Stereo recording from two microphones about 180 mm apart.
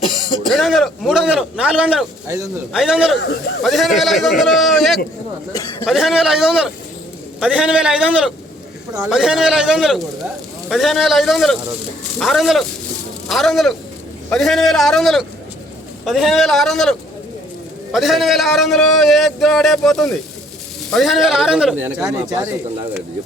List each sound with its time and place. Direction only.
0.0 s throat clearing: 25° left (ahead or behind)
0.4 s a man's voice: centre (ahead or behind)
2.2 s speech: 15° right (ahead or behind)
2.7 s a man's voice: 5° right (ahead or behind)
3.2 s speech: 75° left (ahead or behind)
3.6 s a man's voice: centre (ahead or behind)